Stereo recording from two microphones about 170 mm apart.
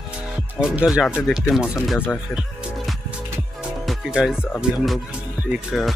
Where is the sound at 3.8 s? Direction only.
5° right (ahead or behind).